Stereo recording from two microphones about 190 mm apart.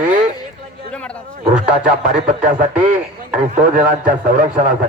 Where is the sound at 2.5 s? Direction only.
45° right (ahead or behind).